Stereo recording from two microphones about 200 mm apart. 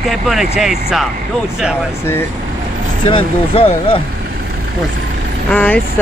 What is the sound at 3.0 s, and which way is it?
Speech, 25° left (ahead or behind).